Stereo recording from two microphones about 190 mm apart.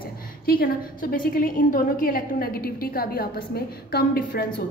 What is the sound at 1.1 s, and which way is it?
A woman's voice, 50° left (ahead or behind).